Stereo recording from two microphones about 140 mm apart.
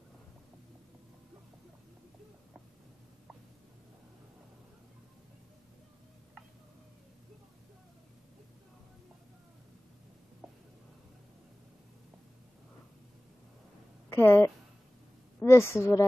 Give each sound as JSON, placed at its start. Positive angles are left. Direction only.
{"t": 14.0, "sound": "a woman's voice", "side_deg": 20}